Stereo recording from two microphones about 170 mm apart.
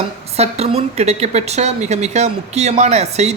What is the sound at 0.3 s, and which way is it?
A woman's voice, 40° right (ahead or behind).